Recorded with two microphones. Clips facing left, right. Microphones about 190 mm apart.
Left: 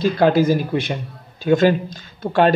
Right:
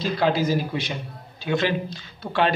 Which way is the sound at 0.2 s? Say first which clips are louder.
Left 6 dB; 50° left (ahead or behind).